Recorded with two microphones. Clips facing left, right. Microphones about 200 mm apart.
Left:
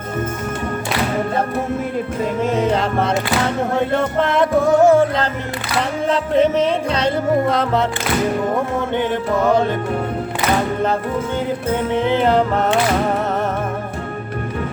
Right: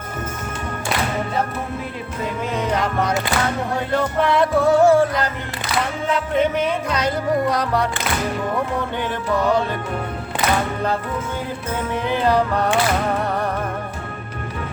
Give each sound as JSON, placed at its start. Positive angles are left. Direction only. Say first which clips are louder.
{"t": 2.6, "sound": "music", "louder": "left 1 dB", "side_deg": 25}
{"t": 9.4, "sound": "music", "louder": "left 3 dB", "side_deg": 45}
{"t": 11.9, "sound": "music", "louder": "left 3 dB", "side_deg": 20}